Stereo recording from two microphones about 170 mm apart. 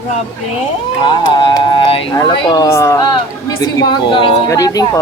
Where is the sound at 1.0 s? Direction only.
30° left (ahead or behind).